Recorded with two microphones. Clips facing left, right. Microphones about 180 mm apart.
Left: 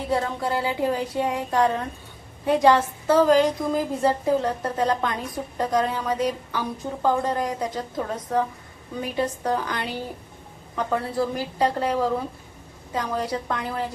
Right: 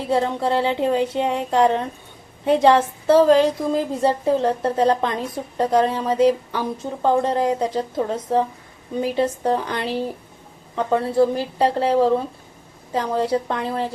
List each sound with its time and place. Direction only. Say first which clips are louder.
0.1 s a woman's voice: right 5 dB; 25° right (ahead or behind)